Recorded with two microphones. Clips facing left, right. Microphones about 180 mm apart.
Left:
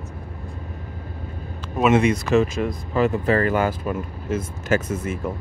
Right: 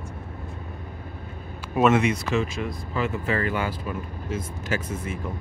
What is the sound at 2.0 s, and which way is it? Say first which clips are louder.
Speech: left 6 dB; 45° left (ahead or behind).